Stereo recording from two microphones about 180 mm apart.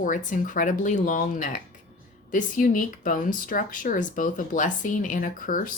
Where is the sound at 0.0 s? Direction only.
45° left (ahead or behind).